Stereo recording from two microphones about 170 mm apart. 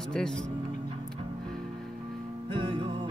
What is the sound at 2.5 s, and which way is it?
Music, 30° right (ahead or behind).